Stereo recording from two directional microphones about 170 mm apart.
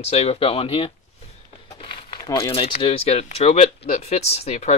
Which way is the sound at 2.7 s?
35° left (ahead or behind).